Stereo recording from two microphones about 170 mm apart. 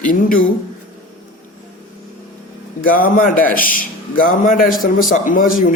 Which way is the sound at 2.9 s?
55° left (ahead or behind).